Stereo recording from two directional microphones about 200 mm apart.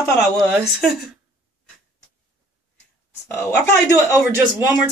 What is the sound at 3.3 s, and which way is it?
Speech, 10° left (ahead or behind).